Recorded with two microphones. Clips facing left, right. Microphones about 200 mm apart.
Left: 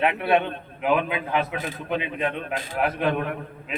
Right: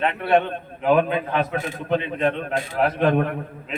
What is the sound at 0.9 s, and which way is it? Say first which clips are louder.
Speech: right 8 dB; 45° right (ahead or behind).